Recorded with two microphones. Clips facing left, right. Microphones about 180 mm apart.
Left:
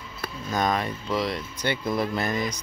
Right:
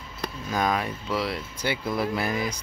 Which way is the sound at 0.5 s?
5° right (ahead or behind).